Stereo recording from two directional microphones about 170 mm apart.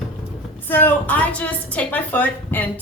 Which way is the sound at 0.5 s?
10° left (ahead or behind).